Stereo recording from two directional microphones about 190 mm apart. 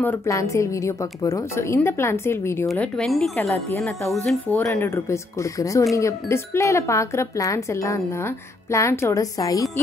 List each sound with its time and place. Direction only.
0.0 s speech: 10° left (ahead or behind)
2.7 s speech: centre (ahead or behind); by 9.7 s 20° left (ahead or behind)